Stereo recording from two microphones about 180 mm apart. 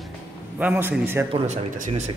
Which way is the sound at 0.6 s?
10° right (ahead or behind).